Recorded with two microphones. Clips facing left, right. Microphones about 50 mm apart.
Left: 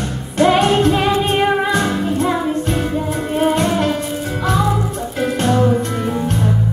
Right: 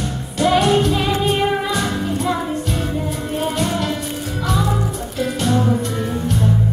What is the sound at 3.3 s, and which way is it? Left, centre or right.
Music, left.